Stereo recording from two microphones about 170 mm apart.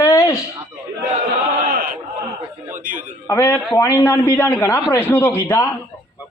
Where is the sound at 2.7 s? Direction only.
50° right (ahead or behind).